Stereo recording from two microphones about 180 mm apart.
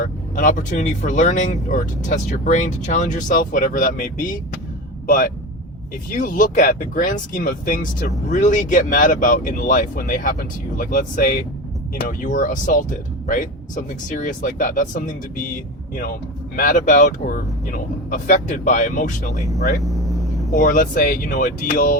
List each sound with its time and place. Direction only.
0.0 s speech: 50° left (ahead or behind)
16.6 s speech: 50° left (ahead or behind)
19.8 s vehicle: centre (ahead or behind)
20.5 s speech: 50° left (ahead or behind)